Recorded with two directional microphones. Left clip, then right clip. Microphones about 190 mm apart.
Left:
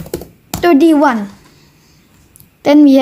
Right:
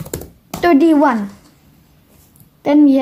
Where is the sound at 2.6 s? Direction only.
15° left (ahead or behind).